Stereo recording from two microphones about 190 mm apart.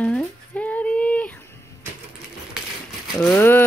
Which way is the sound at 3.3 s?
10° left (ahead or behind).